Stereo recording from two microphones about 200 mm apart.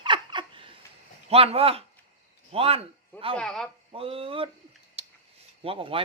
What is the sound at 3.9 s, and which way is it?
Speech, 30° right (ahead or behind).